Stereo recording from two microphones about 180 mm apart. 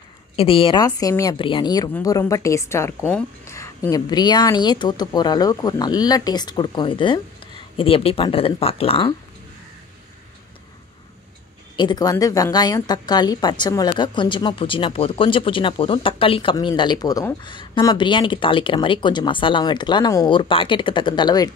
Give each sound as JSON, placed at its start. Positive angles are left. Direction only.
{"t": 0.4, "sound": "a woman's voice", "side_deg": 30}
{"t": 11.7, "sound": "a woman's voice", "side_deg": 25}